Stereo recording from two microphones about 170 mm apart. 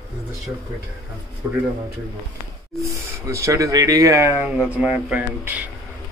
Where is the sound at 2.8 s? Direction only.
20° right (ahead or behind).